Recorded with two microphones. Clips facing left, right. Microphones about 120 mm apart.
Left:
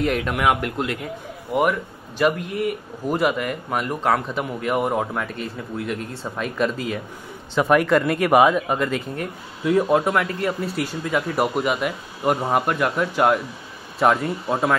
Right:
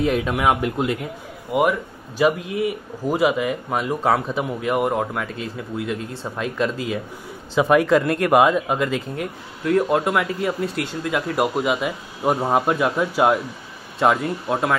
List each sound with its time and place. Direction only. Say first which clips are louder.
0.0 s speech: right 1 dB; centre (ahead or behind)
12.6 s speech: right 2 dB; 15° right (ahead or behind)